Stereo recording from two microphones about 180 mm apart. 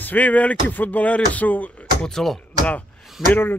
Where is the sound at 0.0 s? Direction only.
10° left (ahead or behind).